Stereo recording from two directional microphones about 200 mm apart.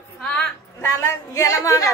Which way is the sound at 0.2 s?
5° left (ahead or behind).